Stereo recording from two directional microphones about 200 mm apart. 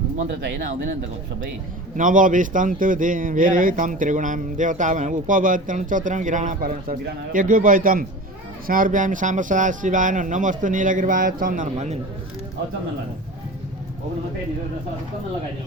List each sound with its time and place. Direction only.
2.0 s a man's voice: 40° right (ahead or behind)